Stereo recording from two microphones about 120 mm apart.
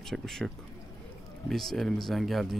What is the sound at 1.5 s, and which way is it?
Speech, centre (ahead or behind).